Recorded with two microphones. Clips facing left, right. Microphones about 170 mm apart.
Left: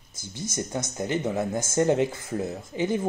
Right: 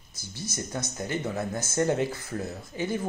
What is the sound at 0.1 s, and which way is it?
Speech, 20° left (ahead or behind).